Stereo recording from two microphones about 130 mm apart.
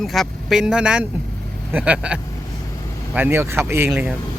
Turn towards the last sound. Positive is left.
turn(degrees=-5)  # may be behind; listen again after turning